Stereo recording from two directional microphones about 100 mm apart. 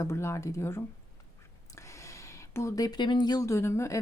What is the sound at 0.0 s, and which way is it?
Speech, 25° left (ahead or behind).